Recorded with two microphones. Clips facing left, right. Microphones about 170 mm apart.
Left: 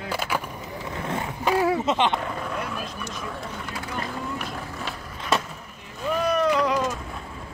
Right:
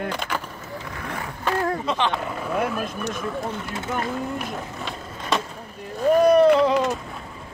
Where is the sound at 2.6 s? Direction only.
55° right (ahead or behind).